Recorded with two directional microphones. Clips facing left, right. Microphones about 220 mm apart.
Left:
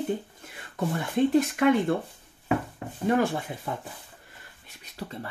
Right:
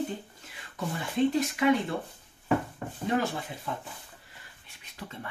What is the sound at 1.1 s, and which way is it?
Speech, 55° left (ahead or behind).